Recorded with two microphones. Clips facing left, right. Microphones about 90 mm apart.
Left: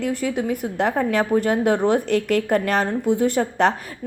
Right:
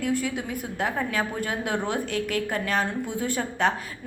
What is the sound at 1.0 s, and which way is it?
A woman's voice, 60° left (ahead or behind).